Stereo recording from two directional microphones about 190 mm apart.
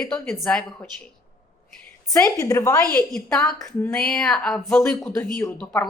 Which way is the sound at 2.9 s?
5° left (ahead or behind).